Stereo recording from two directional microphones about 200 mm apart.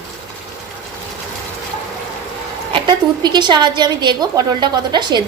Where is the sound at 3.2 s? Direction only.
20° right (ahead or behind).